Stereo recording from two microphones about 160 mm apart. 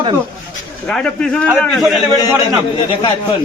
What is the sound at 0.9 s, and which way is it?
A man's voice, 5° left (ahead or behind).